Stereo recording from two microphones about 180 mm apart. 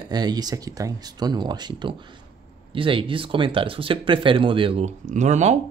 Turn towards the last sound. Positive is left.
turn(degrees=-40)  # may be behind; listen again after turning